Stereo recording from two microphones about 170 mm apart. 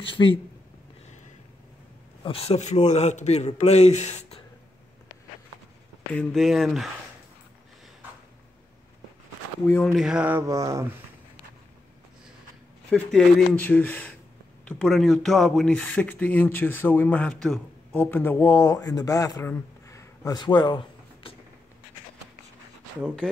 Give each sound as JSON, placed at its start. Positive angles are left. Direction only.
{"t": 0.0, "sound": "speech", "side_deg": 30}
{"t": 2.2, "sound": "a man's voice", "side_deg": 35}
{"t": 6.1, "sound": "speech", "side_deg": 0}
{"t": 9.7, "sound": "speech", "side_deg": 10}
{"t": 9.9, "sound": "a sound", "side_deg": -5}
{"t": 12.9, "sound": "speech", "side_deg": 5}
{"t": 23.2, "sound": "speech", "side_deg": 5}